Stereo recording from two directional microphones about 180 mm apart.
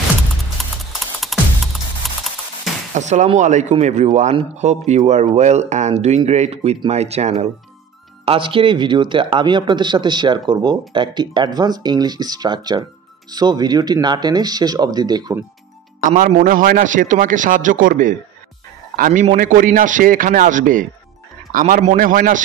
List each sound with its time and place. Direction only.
0.6 s music: centre (ahead or behind)
2.9 s speech: 40° right (ahead or behind); by 15.4 s 20° right (ahead or behind)
16.1 s a man's voice: 45° right (ahead or behind)